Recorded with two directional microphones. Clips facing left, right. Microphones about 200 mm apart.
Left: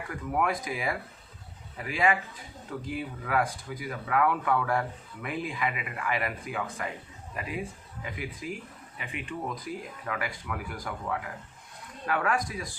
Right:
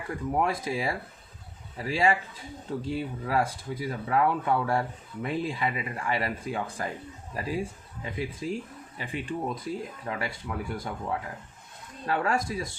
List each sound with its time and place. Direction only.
0.1 s speech: 30° right (ahead or behind)